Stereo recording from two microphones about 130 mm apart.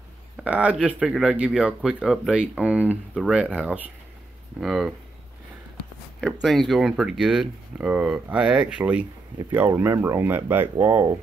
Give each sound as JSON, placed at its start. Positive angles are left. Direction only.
{"t": 0.4, "sound": "speech", "side_deg": -10}
{"t": 6.2, "sound": "speech", "side_deg": 5}
{"t": 9.7, "sound": "speech", "side_deg": -25}